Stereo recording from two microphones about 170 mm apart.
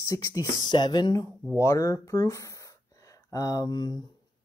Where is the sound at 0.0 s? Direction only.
20° left (ahead or behind).